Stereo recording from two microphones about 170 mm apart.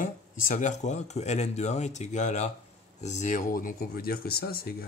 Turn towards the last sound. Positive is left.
turn(degrees=65)  # may be behind; listen again after turning